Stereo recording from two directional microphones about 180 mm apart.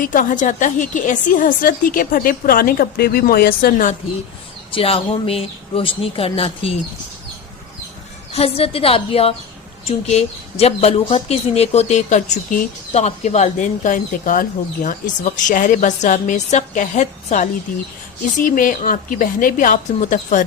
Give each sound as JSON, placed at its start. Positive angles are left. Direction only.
{"t": 0.0, "sound": "a woman's voice", "side_deg": 50}
{"t": 4.7, "sound": "speech", "side_deg": 30}
{"t": 8.3, "sound": "a woman's voice", "side_deg": 35}